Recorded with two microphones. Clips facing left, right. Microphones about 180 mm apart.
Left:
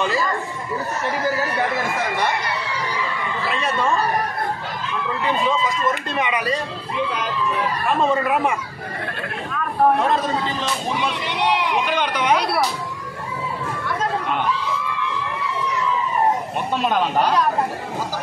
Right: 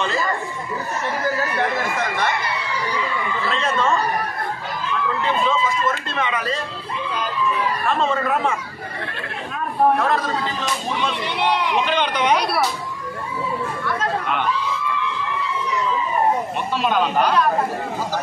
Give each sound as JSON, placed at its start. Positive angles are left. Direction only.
{"t": 3.4, "sound": "speech", "side_deg": 15}
{"t": 5.2, "sound": "speech", "side_deg": 15}
{"t": 7.8, "sound": "speech", "side_deg": 15}
{"t": 9.9, "sound": "speech", "side_deg": 20}
{"t": 11.3, "sound": "speech", "side_deg": 10}